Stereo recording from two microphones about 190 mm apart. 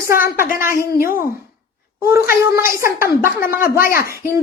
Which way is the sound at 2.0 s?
10° right (ahead or behind).